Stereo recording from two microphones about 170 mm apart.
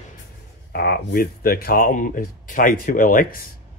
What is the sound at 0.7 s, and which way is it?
Speech, 70° left (ahead or behind).